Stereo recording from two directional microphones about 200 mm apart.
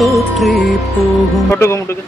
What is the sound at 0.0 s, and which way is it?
Music, centre (ahead or behind).